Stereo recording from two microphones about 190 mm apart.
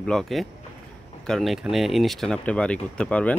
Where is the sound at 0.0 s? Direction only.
Centre (ahead or behind).